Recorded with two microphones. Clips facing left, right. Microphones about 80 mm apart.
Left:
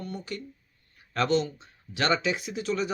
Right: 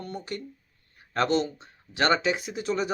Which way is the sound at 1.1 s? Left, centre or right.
Right.